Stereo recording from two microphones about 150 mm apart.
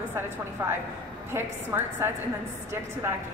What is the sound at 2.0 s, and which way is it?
Speech, 15° right (ahead or behind).